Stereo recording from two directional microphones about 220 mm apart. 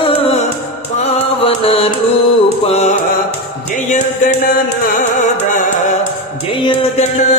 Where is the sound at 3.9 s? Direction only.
35° left (ahead or behind).